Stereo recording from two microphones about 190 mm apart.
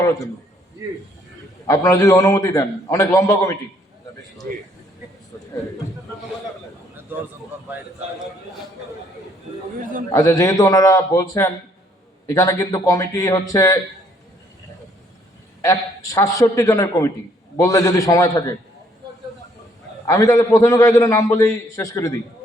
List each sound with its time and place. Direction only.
0.0 s a man's voice: 20° left (ahead or behind)
1.6 s a man's voice: 15° left (ahead or behind)
10.1 s a man's voice: 15° left (ahead or behind)
15.6 s a man's voice: 15° left (ahead or behind)
20.1 s a man's voice: 15° left (ahead or behind)